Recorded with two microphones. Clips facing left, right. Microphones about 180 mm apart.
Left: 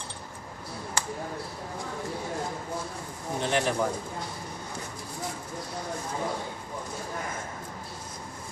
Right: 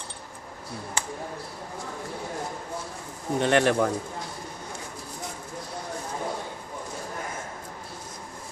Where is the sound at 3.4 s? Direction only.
70° right (ahead or behind).